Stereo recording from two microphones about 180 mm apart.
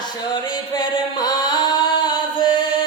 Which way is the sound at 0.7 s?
25° left (ahead or behind).